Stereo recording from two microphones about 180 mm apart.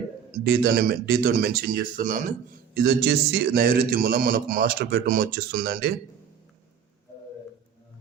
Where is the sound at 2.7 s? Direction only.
60° right (ahead or behind).